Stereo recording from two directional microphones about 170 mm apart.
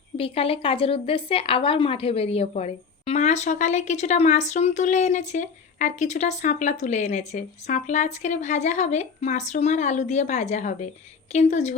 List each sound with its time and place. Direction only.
0.2 s a woman's voice: 35° left (ahead or behind)